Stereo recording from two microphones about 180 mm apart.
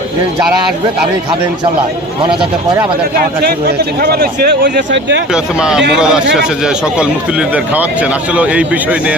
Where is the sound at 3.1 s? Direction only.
60° right (ahead or behind); by 5.2 s 80° right.